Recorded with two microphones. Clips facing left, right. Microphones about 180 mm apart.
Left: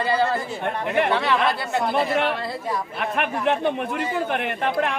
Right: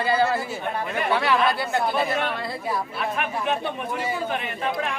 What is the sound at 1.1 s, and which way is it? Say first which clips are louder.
Speech: even; 5° right (ahead or behind).